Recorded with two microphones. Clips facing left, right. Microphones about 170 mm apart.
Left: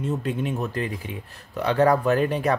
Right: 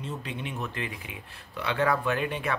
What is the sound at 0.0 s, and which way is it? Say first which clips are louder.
Speech: left 9 dB; 45° left (ahead or behind).